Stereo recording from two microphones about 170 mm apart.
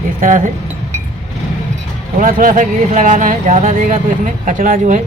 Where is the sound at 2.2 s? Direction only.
50° right (ahead or behind).